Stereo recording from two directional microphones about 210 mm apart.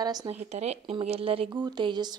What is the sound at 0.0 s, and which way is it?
Speech, 20° right (ahead or behind).